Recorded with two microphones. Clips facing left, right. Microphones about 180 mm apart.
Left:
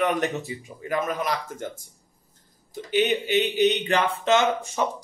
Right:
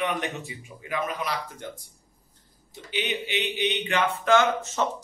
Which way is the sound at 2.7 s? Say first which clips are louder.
Left 8 dB; 45° left (ahead or behind).